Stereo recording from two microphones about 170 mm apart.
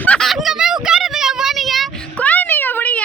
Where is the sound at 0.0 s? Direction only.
5° left (ahead or behind).